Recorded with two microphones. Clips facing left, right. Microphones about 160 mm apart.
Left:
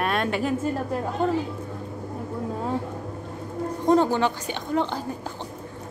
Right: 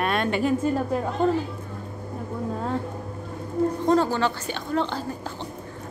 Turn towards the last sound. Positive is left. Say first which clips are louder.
# left 1 dB
turn(degrees=15)  # may be behind; listen again after turning